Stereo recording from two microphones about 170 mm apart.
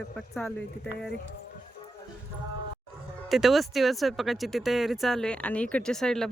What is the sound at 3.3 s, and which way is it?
Speech, centre (ahead or behind).